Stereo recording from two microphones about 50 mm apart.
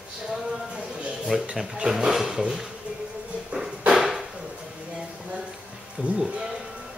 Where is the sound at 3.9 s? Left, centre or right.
Centre.